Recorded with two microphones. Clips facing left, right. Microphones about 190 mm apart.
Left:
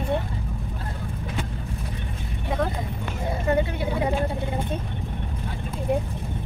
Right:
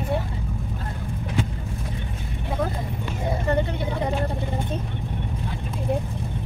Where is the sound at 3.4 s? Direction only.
10° left (ahead or behind).